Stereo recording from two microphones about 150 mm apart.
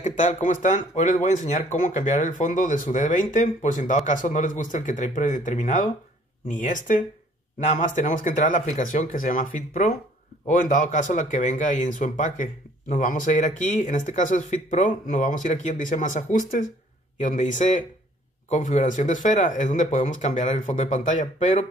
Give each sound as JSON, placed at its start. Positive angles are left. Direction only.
{"t": 0.0, "sound": "speech", "side_deg": 55}